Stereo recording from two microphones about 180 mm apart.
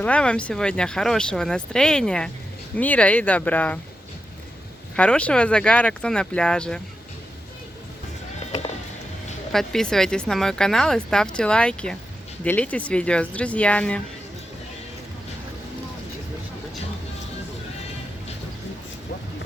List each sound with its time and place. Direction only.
0.0 s speech: 5° left (ahead or behind)
4.9 s speech: 5° left (ahead or behind)
9.5 s speech: centre (ahead or behind)